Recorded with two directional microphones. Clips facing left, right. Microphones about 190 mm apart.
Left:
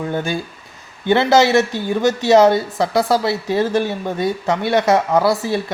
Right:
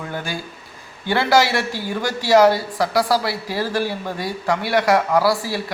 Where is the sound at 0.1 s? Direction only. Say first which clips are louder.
Left 6 dB; 20° left (ahead or behind).